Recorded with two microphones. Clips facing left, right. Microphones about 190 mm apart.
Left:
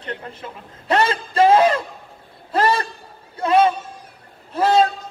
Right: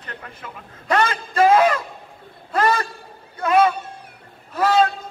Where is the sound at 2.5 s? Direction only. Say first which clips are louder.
Left 1 dB; 30° left (ahead or behind).